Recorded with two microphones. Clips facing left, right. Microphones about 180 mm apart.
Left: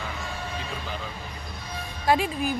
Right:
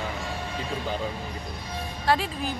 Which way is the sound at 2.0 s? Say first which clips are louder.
Left 2 dB; 10° left (ahead or behind).